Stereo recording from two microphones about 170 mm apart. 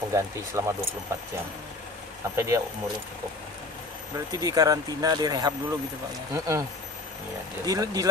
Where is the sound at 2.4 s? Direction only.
20° right (ahead or behind).